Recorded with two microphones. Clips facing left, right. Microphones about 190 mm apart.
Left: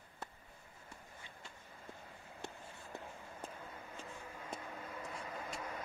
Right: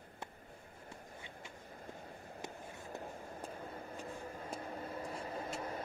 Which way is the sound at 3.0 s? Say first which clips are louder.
Right 4 dB; 40° right (ahead or behind).